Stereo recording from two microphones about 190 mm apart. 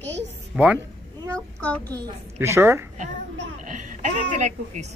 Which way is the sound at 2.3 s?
15° right (ahead or behind).